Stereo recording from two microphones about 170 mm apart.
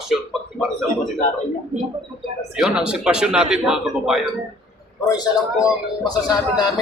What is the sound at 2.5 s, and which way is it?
A man's voice, 5° right (ahead or behind).